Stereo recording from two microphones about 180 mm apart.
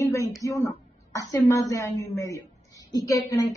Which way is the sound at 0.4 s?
20° left (ahead or behind).